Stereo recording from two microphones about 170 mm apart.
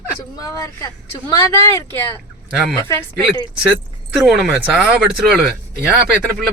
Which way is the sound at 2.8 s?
20° left (ahead or behind).